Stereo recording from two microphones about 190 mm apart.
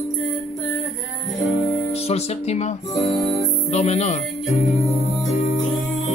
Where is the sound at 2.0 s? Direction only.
35° left (ahead or behind).